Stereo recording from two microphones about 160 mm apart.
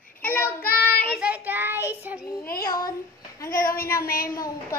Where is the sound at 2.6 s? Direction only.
25° left (ahead or behind).